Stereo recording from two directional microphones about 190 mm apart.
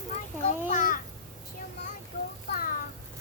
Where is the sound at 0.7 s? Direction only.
45° left (ahead or behind).